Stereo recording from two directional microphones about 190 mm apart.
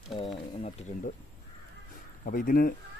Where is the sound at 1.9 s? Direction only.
45° left (ahead or behind).